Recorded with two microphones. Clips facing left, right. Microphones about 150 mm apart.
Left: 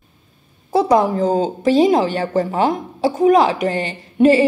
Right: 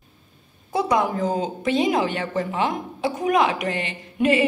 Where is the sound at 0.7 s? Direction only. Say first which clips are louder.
Left 7 dB; 30° left (ahead or behind).